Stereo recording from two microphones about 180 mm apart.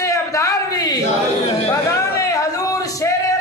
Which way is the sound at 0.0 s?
15° left (ahead or behind).